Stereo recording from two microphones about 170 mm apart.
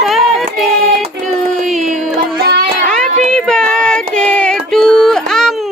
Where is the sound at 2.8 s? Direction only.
5° left (ahead or behind).